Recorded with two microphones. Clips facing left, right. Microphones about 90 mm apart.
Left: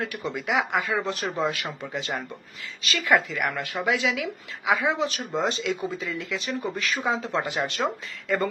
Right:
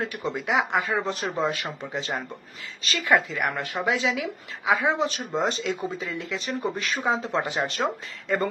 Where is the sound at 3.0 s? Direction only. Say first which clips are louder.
Even; 25° right (ahead or behind).